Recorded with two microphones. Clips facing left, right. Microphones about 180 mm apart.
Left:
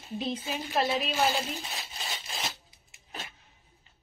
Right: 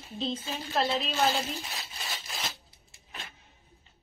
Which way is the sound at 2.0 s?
20° left (ahead or behind).